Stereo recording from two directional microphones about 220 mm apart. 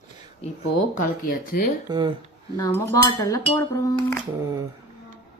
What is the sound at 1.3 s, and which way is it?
Speech, 40° left (ahead or behind).